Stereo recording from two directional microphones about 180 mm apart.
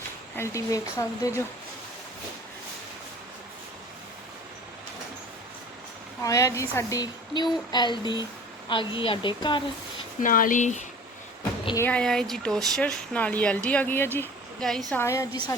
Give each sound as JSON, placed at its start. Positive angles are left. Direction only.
{"t": 0.3, "sound": "speech", "side_deg": 15}
{"t": 6.2, "sound": "speech", "side_deg": 15}
{"t": 10.2, "sound": "speech", "side_deg": 50}
{"t": 11.8, "sound": "a woman's voice", "side_deg": 5}
{"t": 15.0, "sound": "speech", "side_deg": 15}